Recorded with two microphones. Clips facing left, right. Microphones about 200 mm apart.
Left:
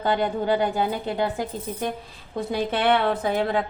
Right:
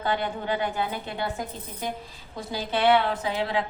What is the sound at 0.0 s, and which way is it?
Speech, 40° left (ahead or behind).